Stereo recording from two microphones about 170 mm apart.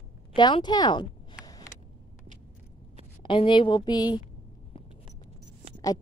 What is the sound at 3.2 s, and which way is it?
Speech, 30° left (ahead or behind).